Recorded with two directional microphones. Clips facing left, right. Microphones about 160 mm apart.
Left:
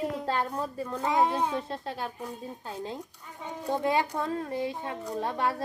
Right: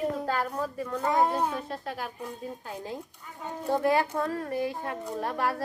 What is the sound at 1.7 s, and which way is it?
Speech, 30° left (ahead or behind).